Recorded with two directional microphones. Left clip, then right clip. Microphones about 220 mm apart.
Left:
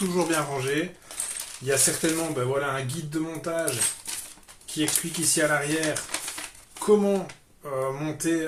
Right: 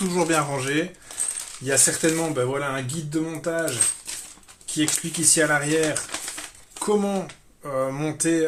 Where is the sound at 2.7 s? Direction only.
45° right (ahead or behind).